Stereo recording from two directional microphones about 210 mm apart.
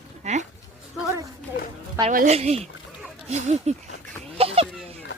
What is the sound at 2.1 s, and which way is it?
Speech, 35° right (ahead or behind).